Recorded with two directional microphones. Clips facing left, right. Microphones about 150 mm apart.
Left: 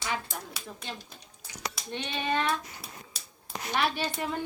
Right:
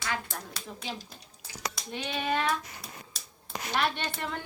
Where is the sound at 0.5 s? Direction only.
Centre (ahead or behind).